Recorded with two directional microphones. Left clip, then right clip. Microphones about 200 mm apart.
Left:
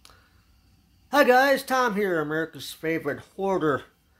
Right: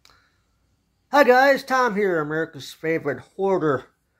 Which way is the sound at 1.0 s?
10° left (ahead or behind).